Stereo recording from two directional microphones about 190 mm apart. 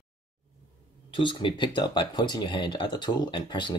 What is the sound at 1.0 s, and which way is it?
Speech, 25° left (ahead or behind).